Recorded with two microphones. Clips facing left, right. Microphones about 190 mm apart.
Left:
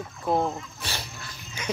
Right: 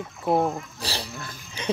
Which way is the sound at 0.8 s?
30° right (ahead or behind).